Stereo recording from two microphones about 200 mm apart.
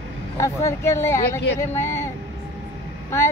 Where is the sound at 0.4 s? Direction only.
15° left (ahead or behind).